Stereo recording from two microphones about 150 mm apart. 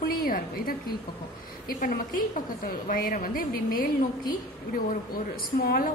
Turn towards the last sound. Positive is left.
turn(degrees=80)